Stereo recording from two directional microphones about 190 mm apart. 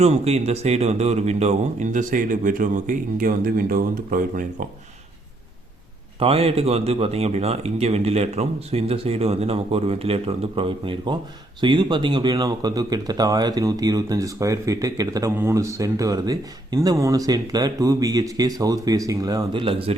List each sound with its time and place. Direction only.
0.0 s speech: 35° right (ahead or behind)
6.1 s speech: 30° right (ahead or behind)